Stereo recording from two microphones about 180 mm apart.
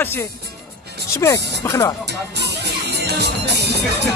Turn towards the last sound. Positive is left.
turn(degrees=-65)  # may be behind; listen again after turning